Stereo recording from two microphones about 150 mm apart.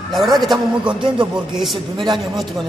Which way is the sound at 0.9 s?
35° right (ahead or behind).